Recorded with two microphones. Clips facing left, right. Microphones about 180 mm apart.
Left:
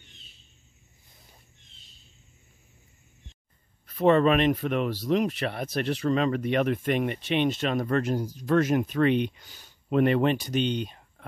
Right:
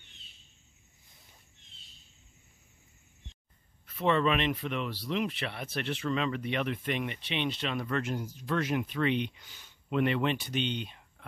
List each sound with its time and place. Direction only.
3.8 s speech: 40° left (ahead or behind)